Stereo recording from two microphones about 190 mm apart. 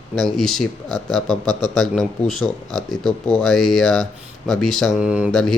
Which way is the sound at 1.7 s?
Centre (ahead or behind).